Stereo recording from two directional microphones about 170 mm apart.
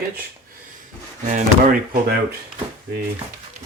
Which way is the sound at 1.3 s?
50° right (ahead or behind).